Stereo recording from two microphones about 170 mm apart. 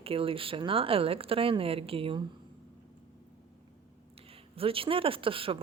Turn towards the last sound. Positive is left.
turn(degrees=-30)  # may be behind; listen again after turning